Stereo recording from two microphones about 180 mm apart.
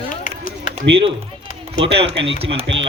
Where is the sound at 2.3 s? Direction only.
35° right (ahead or behind).